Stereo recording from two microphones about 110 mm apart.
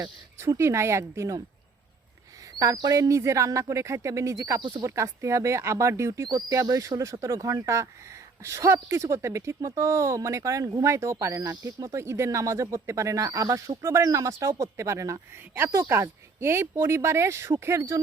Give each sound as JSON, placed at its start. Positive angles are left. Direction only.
{"t": 0.3, "sound": "speech", "side_deg": -25}
{"t": 2.6, "sound": "speech", "side_deg": -35}